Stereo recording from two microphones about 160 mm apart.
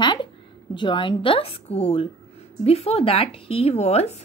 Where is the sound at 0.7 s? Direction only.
30° left (ahead or behind).